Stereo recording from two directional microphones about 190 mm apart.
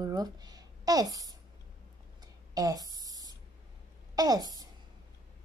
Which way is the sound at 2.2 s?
20° right (ahead or behind).